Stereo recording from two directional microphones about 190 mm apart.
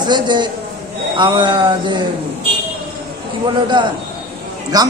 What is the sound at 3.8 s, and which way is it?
A man's voice, 25° right (ahead or behind).